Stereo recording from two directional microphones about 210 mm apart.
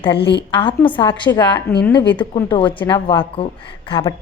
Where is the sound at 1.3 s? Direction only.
15° left (ahead or behind).